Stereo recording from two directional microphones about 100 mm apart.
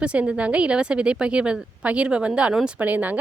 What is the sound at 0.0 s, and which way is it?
A woman's voice, 10° right (ahead or behind).